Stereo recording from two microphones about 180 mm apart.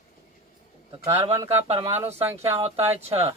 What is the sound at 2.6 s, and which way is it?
Speech, 35° right (ahead or behind).